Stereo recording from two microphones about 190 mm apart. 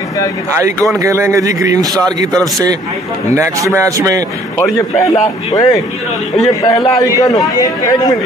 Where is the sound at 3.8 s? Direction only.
20° right (ahead or behind).